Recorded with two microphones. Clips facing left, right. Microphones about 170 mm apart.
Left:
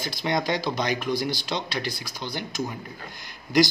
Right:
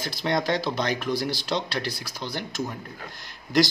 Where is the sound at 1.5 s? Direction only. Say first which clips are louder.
Right 2 dB; 5° right (ahead or behind).